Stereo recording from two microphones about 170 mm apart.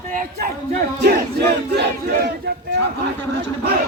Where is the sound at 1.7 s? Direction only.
75° right (ahead or behind).